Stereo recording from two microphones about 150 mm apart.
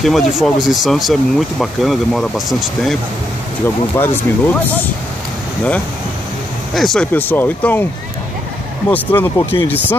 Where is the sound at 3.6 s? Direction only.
15° left (ahead or behind).